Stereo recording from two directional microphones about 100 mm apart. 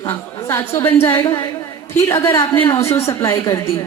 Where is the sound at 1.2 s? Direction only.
40° left (ahead or behind).